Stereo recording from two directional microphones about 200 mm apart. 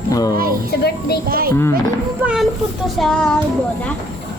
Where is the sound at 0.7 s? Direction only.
55° left (ahead or behind).